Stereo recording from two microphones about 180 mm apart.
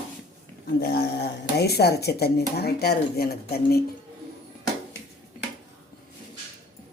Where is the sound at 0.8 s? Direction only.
60° left (ahead or behind).